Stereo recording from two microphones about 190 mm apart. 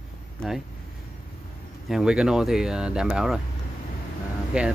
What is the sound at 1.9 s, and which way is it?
Speech, 5° right (ahead or behind).